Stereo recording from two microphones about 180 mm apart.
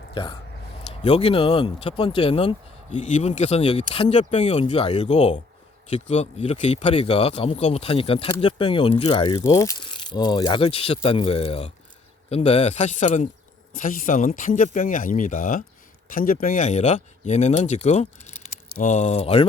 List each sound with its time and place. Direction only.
0.1 s speech: 30° left (ahead or behind)